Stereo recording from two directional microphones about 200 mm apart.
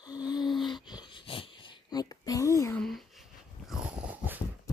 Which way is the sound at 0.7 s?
20° left (ahead or behind).